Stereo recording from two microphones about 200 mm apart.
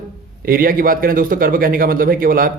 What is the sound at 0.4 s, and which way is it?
A man's voice, 45° right (ahead or behind).